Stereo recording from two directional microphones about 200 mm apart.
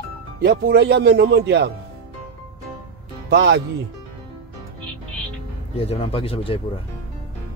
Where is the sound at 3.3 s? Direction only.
55° right (ahead or behind).